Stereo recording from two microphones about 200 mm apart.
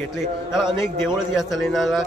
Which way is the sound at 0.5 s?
Centre (ahead or behind).